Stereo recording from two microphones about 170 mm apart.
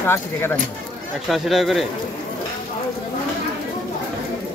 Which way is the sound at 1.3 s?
Centre (ahead or behind).